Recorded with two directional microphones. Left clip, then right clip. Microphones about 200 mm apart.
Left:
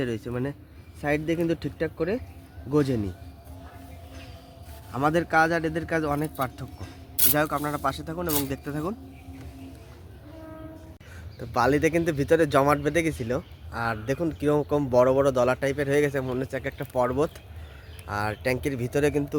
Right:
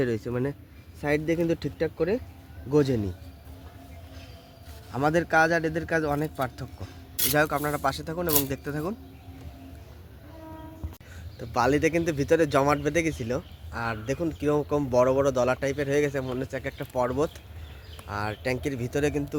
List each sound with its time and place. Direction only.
0.0 s speech: 30° right (ahead or behind)
4.9 s speech: 25° right (ahead or behind)
7.3 s speech: 35° right (ahead or behind)
11.3 s speech: centre (ahead or behind)